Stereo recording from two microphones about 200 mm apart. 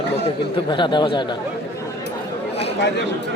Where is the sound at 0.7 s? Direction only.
20° left (ahead or behind).